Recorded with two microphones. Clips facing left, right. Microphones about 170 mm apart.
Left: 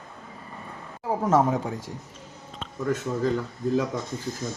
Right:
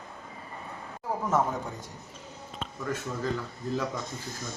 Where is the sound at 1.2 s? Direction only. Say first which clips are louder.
Left 6 dB; 90° left.